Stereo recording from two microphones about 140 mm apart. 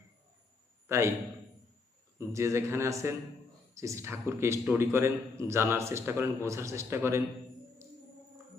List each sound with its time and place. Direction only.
0.9 s a man's voice: 20° right (ahead or behind)
2.1 s speech: 20° right (ahead or behind)